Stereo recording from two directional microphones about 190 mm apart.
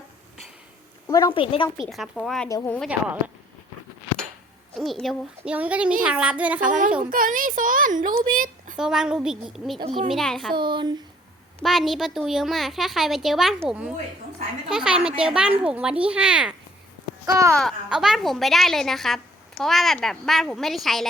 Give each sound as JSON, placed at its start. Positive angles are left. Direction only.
{"t": 1.0, "sound": "a woman's voice", "side_deg": 20}
{"t": 1.7, "sound": "a woman's voice", "side_deg": 0}
{"t": 4.8, "sound": "a woman's voice", "side_deg": 0}
{"t": 6.7, "sound": "speech", "side_deg": -45}
{"t": 8.3, "sound": "a sound", "side_deg": -45}
{"t": 8.8, "sound": "a woman's voice", "side_deg": -5}
{"t": 9.7, "sound": "a child's voice", "side_deg": -25}
{"t": 10.1, "sound": "a woman's voice", "side_deg": 0}
{"t": 10.5, "sound": "a child's voice", "side_deg": -25}
{"t": 11.6, "sound": "a woman's voice", "side_deg": 0}
{"t": 17.2, "sound": "speech", "side_deg": -15}
{"t": 17.5, "sound": "a woman's voice", "side_deg": 0}